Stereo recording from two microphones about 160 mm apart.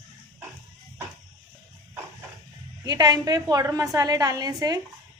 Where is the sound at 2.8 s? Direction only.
25° right (ahead or behind).